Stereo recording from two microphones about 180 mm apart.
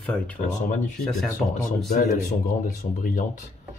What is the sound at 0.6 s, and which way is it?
Speech, 45° left (ahead or behind).